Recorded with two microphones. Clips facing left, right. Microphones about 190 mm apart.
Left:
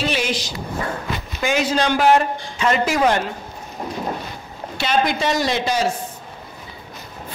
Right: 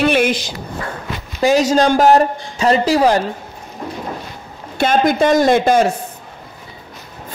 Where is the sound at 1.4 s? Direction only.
40° right (ahead or behind).